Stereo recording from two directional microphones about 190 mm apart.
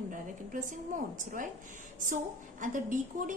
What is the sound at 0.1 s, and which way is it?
A woman's voice, 45° right (ahead or behind).